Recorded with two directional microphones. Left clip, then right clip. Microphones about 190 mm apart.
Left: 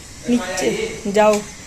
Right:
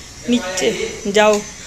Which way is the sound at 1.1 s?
Centre (ahead or behind).